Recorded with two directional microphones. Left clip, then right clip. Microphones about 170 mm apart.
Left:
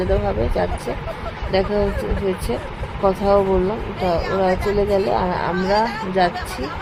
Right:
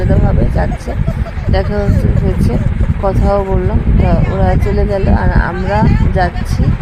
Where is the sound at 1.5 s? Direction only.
10° right (ahead or behind).